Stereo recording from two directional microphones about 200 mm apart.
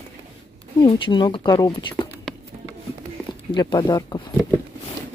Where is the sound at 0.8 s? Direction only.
20° left (ahead or behind).